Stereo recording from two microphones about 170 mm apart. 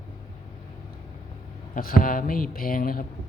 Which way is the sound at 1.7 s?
55° left (ahead or behind).